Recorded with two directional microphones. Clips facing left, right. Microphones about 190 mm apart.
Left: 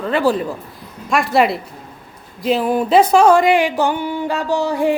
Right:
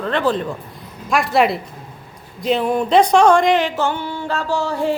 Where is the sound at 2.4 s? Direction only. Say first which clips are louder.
Left 1 dB; centre (ahead or behind).